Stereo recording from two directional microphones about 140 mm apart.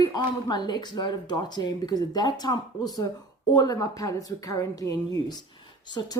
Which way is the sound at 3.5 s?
25° left (ahead or behind).